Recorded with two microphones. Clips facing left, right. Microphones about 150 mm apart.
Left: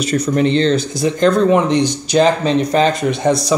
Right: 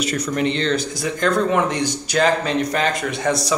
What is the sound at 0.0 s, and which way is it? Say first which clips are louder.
Speech: left 6 dB; 30° left (ahead or behind).